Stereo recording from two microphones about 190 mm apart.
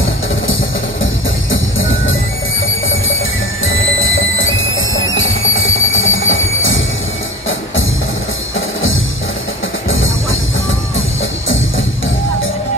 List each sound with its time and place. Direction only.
1.5 s music: 90° left
3.6 s music: 90° left
9.8 s music: 90° left